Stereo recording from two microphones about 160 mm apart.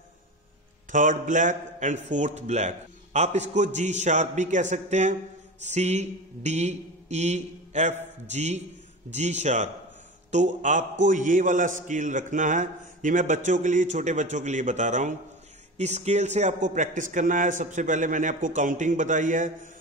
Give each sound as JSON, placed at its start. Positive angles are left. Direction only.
{"t": 0.9, "sound": "a man's voice", "side_deg": -55}